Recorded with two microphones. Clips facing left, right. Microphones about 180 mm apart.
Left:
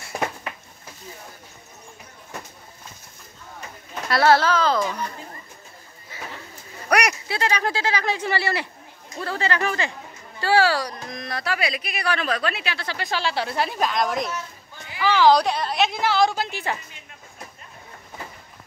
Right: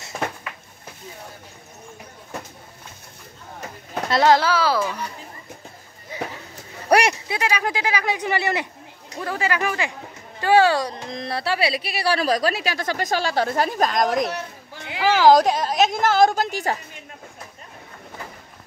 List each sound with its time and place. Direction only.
4.1 s speech: 15° right (ahead or behind)
6.9 s speech: 30° right (ahead or behind)
7.2 s a woman's voice: 10° right (ahead or behind); by 16.7 s 40° right (ahead or behind)